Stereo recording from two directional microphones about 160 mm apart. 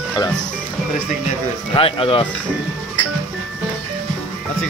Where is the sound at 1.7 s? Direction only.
35° left (ahead or behind).